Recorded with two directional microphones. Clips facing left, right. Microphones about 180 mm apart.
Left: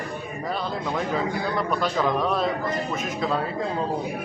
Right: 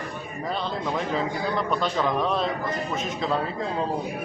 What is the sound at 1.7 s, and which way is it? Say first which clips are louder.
Speech: left 2 dB; 5° left (ahead or behind).